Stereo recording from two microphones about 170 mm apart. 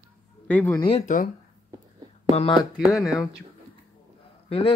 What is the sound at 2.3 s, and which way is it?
Speech, 30° left (ahead or behind).